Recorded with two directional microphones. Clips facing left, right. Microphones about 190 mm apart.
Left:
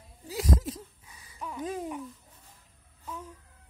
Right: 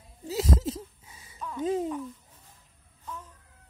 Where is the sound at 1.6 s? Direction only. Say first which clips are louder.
Right 7 dB; 25° right (ahead or behind).